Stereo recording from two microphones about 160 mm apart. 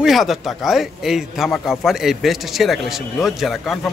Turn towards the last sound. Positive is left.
turn(degrees=0)  # may be behind; listen again after turning